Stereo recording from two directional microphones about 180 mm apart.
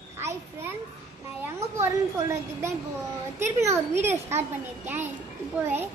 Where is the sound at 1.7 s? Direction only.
15° right (ahead or behind).